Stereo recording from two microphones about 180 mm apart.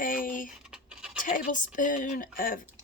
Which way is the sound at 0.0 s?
50° left (ahead or behind).